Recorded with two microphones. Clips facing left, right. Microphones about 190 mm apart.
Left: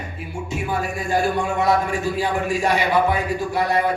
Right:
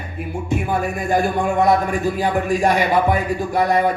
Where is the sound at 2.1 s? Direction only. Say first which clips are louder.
Right 3 dB; 50° right (ahead or behind).